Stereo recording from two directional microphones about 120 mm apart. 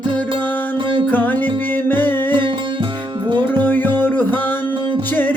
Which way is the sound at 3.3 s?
35° right (ahead or behind).